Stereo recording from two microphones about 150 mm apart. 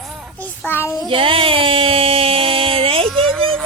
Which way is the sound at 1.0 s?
35° right (ahead or behind).